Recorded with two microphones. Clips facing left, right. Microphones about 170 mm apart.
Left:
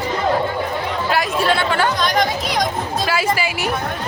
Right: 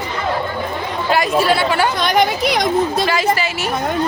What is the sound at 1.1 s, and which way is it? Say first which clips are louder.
Chatter: right 4 dB; centre (ahead or behind).